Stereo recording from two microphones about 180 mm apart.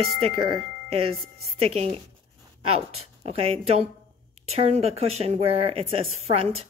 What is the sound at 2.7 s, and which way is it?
Speech, 35° right (ahead or behind).